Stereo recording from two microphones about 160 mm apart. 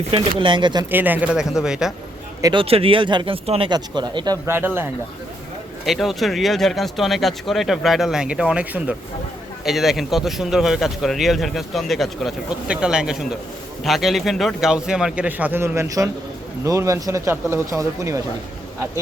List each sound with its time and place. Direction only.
0.1 s speech: 30° right (ahead or behind)
0.9 s speech: 10° right (ahead or behind)
2.4 s speech: 30° right (ahead or behind)
3.7 s speech: 25° right (ahead or behind)
4.4 s speech: 15° right (ahead or behind)
5.8 s speech: centre (ahead or behind); by 18.2 s 20° right (ahead or behind)